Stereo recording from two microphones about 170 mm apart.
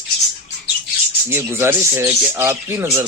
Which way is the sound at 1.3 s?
15° right (ahead or behind).